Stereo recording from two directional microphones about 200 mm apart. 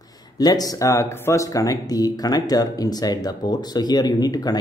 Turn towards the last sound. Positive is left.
turn(degrees=20)  # may be behind; listen again after turning